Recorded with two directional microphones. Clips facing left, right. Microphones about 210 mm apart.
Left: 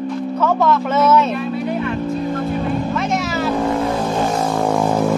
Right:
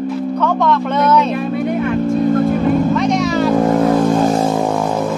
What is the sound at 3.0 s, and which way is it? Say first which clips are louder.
Vehicle: right 5 dB; 5° left (ahead or behind).